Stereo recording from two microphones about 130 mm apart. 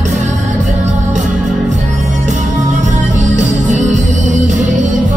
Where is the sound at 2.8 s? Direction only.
70° right (ahead or behind).